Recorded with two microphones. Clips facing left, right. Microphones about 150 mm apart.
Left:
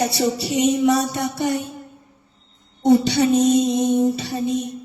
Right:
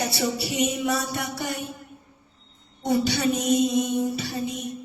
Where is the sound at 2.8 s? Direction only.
25° left (ahead or behind).